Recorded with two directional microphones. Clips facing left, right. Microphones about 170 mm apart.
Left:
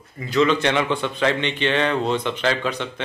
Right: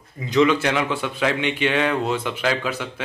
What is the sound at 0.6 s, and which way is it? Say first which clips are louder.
A man's voice: left 1 dB; 5° right (ahead or behind).